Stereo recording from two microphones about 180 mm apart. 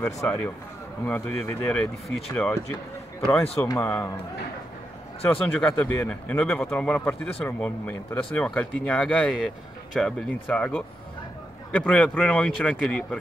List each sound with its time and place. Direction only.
0.0 s speech: 10° left (ahead or behind)
3.6 s speech: 15° left (ahead or behind)
5.2 s speech: 10° left (ahead or behind)